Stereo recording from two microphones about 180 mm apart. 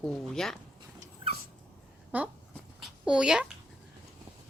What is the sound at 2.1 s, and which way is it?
Speech, 10° right (ahead or behind).